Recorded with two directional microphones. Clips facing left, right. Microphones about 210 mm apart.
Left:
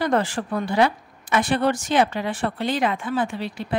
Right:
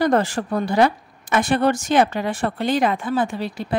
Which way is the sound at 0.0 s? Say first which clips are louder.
Right 3 dB; 45° right (ahead or behind).